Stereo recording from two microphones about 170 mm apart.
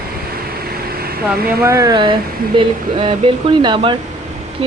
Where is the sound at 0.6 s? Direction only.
65° right (ahead or behind).